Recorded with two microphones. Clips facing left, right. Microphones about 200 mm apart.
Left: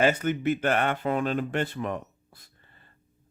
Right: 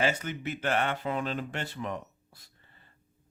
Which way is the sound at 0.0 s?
55° left (ahead or behind).